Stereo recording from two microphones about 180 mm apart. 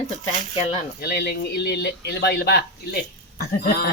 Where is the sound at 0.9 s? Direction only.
60° left (ahead or behind).